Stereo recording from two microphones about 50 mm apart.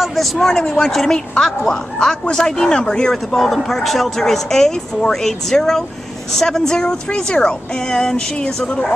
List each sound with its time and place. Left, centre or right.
0.0 s speech: centre
3.3 s speech: centre
8.6 s a woman's voice: left